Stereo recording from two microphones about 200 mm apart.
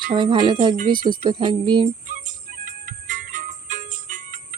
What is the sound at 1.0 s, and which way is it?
Speech, 45° right (ahead or behind).